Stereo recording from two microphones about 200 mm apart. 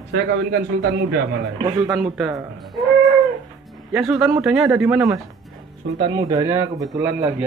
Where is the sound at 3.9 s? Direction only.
5° right (ahead or behind).